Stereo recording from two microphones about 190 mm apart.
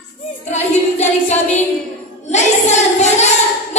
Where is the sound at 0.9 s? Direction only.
35° left (ahead or behind).